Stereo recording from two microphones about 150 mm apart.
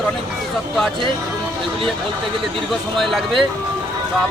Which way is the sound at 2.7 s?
Centre (ahead or behind).